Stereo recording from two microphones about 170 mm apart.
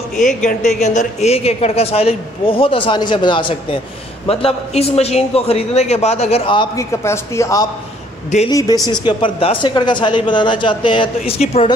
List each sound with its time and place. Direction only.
0.2 s speech: 45° left (ahead or behind)
0.6 s a woman's voice: centre (ahead or behind)
0.8 s a man's voice: 40° left (ahead or behind)
6.8 s a man's voice: 15° left (ahead or behind); by 11.7 s 35° left (ahead or behind)